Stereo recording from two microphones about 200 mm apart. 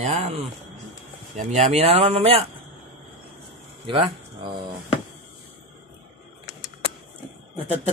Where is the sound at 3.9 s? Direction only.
25° right (ahead or behind).